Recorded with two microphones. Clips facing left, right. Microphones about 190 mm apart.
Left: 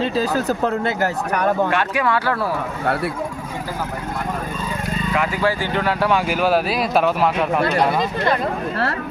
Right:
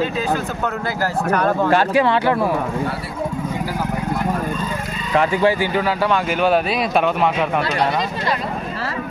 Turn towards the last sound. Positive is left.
turn(degrees=0)  # may be behind; listen again after turning